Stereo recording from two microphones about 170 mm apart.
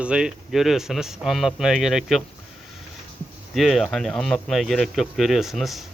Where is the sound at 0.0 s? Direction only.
5° right (ahead or behind).